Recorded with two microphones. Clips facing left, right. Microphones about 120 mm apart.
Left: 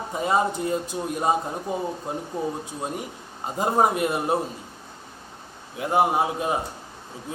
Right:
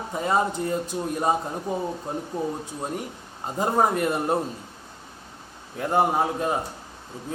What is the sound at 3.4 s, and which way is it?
Speech, 15° left (ahead or behind).